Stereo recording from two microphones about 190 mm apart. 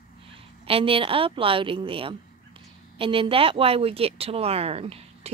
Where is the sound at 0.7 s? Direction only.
30° right (ahead or behind).